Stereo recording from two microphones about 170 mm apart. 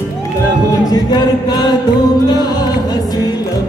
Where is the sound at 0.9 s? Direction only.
25° left (ahead or behind).